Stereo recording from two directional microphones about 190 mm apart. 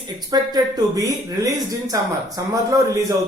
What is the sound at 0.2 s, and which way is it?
Speech, 20° right (ahead or behind).